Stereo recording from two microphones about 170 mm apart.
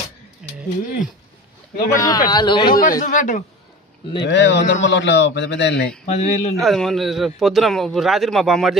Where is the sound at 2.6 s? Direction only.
60° left (ahead or behind).